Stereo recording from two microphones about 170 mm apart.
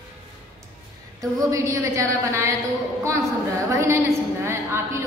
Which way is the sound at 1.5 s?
20° right (ahead or behind).